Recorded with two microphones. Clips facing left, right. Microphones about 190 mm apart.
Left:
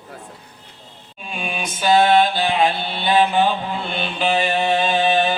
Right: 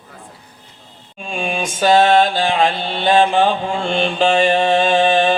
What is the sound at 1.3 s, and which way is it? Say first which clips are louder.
Mantra: right 5 dB; 45° right (ahead or behind).